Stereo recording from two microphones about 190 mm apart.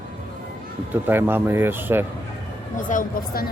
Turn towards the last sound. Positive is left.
turn(degrees=50)  # may be behind; listen again after turning